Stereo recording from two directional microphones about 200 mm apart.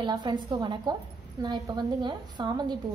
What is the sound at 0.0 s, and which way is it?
A woman's voice, 20° right (ahead or behind).